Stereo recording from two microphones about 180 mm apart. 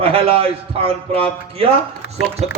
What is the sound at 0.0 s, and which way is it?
A man's voice, 30° right (ahead or behind).